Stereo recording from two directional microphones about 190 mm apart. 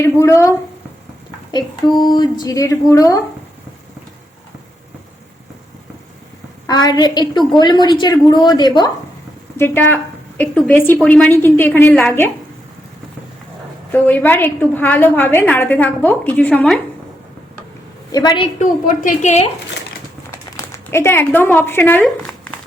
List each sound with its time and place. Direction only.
0.0 s a woman's voice: 15° left (ahead or behind)
6.7 s a woman's voice: 20° left (ahead or behind)
9.6 s a woman's voice: 10° left (ahead or behind)
13.9 s a woman's voice: 10° left (ahead or behind)
18.1 s a woman's voice: 20° left (ahead or behind)
18.6 s a woman's voice: 40° left (ahead or behind)
20.3 s speech: 15° left (ahead or behind)